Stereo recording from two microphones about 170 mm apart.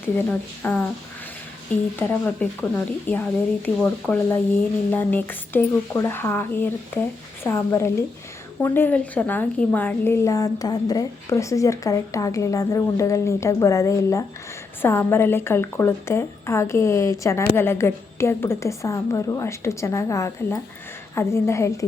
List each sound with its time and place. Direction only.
0.3 s a woman's voice: 10° left (ahead or behind)
2.0 s a woman's voice: 10° left (ahead or behind)